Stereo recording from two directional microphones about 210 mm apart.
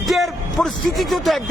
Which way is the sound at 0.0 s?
Centre (ahead or behind).